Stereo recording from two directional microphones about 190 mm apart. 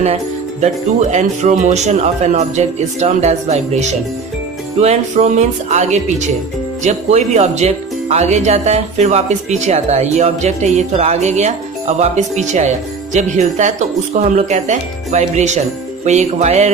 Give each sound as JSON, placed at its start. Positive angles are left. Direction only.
{"t": 1.1, "sound": "speech", "side_deg": -40}